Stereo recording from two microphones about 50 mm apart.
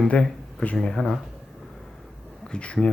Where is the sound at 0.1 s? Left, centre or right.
Left.